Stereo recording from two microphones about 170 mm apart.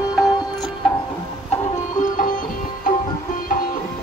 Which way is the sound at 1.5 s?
50° left (ahead or behind).